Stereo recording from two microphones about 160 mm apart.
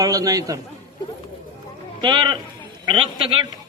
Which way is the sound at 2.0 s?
30° right (ahead or behind).